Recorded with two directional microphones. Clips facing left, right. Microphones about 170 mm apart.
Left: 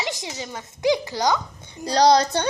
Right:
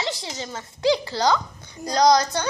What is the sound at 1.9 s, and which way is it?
Speech, 30° left (ahead or behind).